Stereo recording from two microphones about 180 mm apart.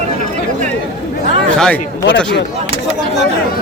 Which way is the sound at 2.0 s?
80° left.